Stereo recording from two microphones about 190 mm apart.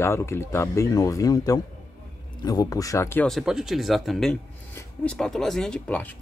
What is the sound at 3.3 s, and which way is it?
Speech, centre (ahead or behind).